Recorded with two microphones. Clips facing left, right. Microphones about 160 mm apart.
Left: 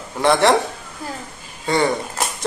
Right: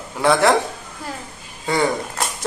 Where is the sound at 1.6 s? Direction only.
5° right (ahead or behind).